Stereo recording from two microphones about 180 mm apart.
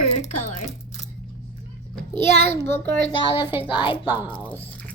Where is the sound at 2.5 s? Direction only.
10° left (ahead or behind).